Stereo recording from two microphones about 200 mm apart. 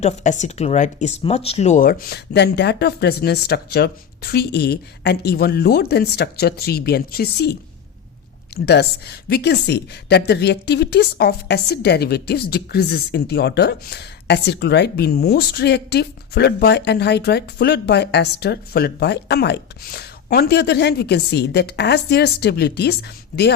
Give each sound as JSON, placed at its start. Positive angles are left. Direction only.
{"t": 0.0, "sound": "speech", "side_deg": 35}
{"t": 8.6, "sound": "a woman's voice", "side_deg": 55}